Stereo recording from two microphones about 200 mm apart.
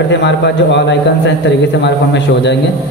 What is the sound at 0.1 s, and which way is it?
A man's voice, 60° left (ahead or behind).